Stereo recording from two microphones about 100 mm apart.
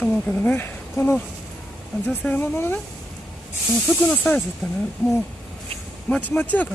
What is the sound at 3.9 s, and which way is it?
Speech, 10° left (ahead or behind).